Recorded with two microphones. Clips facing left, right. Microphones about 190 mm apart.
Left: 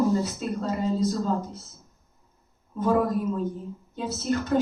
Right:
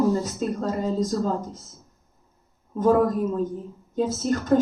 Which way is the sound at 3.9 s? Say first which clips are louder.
Right 4 dB; 45° right (ahead or behind).